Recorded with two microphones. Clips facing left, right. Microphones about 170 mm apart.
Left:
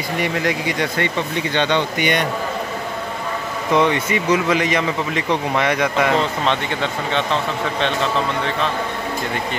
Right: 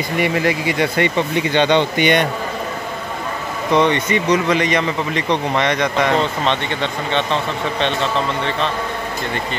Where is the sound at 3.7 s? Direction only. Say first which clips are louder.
Right 2 dB; 5° left (ahead or behind).